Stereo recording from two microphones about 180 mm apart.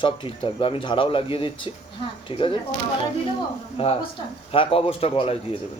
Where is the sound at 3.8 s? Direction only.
30° left (ahead or behind).